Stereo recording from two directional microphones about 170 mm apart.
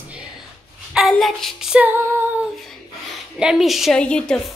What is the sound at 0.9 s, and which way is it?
A woman's voice, centre (ahead or behind).